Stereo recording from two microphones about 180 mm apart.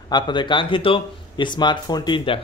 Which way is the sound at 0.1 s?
25° left (ahead or behind).